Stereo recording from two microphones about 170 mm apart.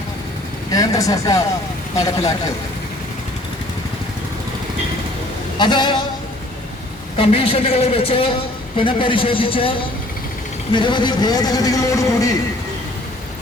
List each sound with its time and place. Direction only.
0.7 s a man's voice: 20° left (ahead or behind)
5.5 s a man's voice: 25° left (ahead or behind)
7.2 s a woman's voice: 35° left (ahead or behind)
10.8 s a man's voice: 30° left (ahead or behind)